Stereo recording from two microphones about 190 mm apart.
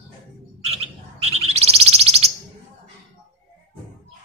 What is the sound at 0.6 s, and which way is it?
Bird, 30° right (ahead or behind).